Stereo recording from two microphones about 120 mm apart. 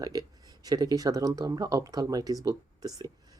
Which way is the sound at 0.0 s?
30° right (ahead or behind).